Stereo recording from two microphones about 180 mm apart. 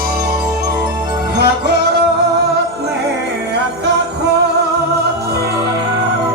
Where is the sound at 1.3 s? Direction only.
65° right (ahead or behind).